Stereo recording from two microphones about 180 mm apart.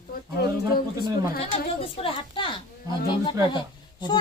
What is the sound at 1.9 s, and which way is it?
Speech, 30° left (ahead or behind).